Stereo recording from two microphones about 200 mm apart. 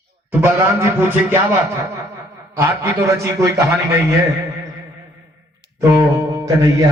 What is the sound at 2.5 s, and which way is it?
Speech, 10° right (ahead or behind).